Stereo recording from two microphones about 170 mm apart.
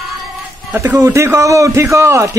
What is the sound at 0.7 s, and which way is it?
A man's voice, 10° right (ahead or behind).